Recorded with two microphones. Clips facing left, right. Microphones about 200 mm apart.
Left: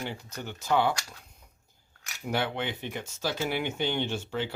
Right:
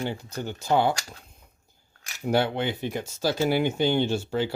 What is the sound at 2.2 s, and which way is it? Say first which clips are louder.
Speech: right 6 dB; 35° right (ahead or behind).